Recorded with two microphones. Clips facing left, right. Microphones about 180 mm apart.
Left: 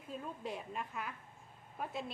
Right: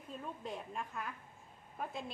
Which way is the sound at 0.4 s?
5° left (ahead or behind).